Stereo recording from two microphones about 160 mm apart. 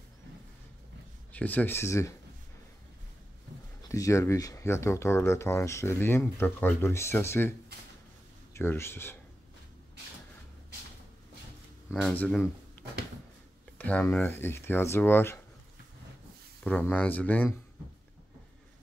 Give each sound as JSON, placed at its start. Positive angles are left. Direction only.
{"t": 1.3, "sound": "speech", "side_deg": 10}
{"t": 3.9, "sound": "speech", "side_deg": 20}
{"t": 8.5, "sound": "speech", "side_deg": 15}
{"t": 11.9, "sound": "speech", "side_deg": 10}
{"t": 12.8, "sound": "a sound", "side_deg": 10}
{"t": 13.7, "sound": "speech", "side_deg": 10}
{"t": 16.6, "sound": "speech", "side_deg": 10}